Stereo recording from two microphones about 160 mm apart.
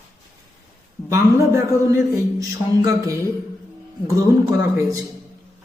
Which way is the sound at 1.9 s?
20° right (ahead or behind).